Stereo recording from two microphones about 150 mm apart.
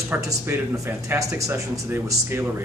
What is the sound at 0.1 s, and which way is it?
Speech, 20° right (ahead or behind).